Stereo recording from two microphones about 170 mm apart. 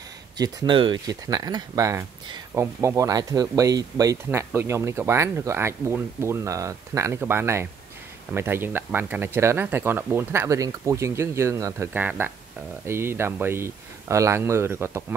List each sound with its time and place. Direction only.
0.4 s speech: 25° right (ahead or behind)